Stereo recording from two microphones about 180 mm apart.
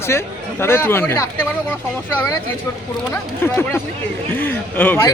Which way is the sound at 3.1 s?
10° left (ahead or behind).